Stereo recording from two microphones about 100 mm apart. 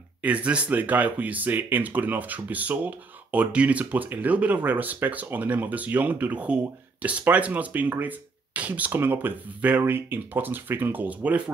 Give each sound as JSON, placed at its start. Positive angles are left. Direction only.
{"t": 0.2, "sound": "speech", "side_deg": -15}